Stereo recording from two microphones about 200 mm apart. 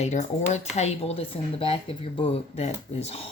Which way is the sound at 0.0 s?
35° left (ahead or behind).